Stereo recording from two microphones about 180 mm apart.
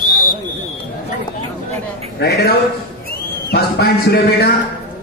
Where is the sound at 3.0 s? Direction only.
60° left (ahead or behind).